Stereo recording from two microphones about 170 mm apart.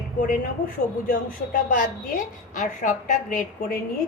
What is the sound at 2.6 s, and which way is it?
A woman's voice, 50° left (ahead or behind).